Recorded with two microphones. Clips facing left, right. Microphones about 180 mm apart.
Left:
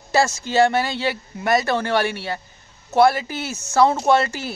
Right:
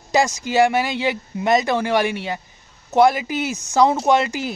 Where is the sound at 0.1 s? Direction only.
15° right (ahead or behind).